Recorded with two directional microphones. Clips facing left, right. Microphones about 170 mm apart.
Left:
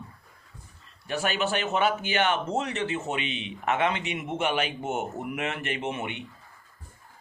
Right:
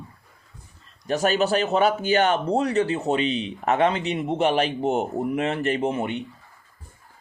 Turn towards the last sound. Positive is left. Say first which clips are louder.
# right 7 dB
turn(degrees=-35)  # may be behind; listen again after turning